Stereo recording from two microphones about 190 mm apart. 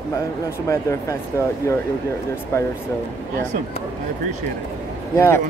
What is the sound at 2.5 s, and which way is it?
Speech, 15° left (ahead or behind).